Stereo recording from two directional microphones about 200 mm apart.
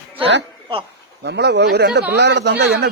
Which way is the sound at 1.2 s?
55° right (ahead or behind).